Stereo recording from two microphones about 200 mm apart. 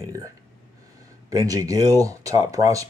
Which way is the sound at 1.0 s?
15° right (ahead or behind).